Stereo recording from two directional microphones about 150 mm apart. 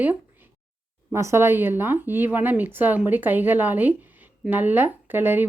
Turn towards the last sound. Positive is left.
turn(degrees=-15)  # may be behind; listen again after turning